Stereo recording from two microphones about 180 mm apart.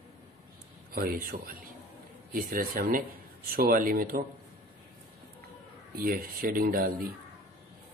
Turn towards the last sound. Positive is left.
turn(degrees=-50)  # may be behind; listen again after turning